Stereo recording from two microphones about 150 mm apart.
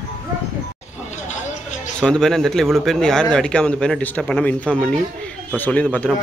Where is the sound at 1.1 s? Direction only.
55° left (ahead or behind).